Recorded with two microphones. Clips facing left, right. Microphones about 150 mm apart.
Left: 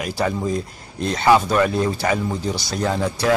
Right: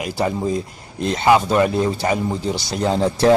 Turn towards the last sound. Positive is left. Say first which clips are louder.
# right 3 dB
turn(degrees=-25)  # may be behind; listen again after turning